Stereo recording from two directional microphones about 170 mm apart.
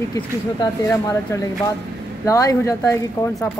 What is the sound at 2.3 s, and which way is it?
Speech, 20° left (ahead or behind).